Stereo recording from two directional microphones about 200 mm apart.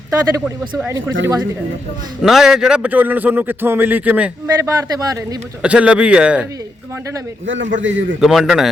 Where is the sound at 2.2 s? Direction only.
Centre (ahead or behind).